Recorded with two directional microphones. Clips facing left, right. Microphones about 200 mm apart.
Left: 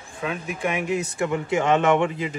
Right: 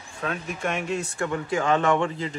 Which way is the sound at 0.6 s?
15° left (ahead or behind).